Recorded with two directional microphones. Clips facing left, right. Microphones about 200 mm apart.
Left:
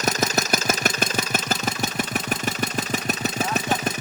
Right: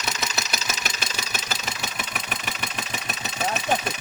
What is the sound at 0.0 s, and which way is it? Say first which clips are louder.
Engine: left 8 dB; 45° left (ahead or behind).